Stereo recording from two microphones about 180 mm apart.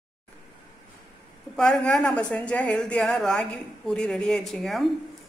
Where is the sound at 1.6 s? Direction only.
5° left (ahead or behind).